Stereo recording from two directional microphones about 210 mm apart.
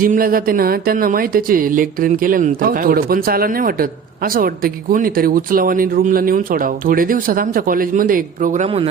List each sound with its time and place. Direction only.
0.0 s speech: 45° right (ahead or behind)